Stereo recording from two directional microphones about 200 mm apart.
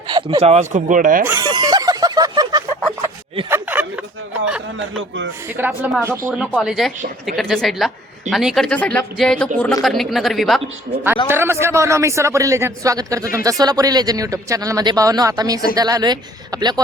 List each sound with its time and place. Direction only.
0.1 s speech: 25° right (ahead or behind)
0.7 s speech: 40° right (ahead or behind)
1.3 s a sound: 20° right (ahead or behind)
3.5 s a sound: 10° right (ahead or behind)
4.8 s speech: 70° right (ahead or behind)
5.5 s speech: 10° right (ahead or behind)
11.3 s speech: 10° right (ahead or behind)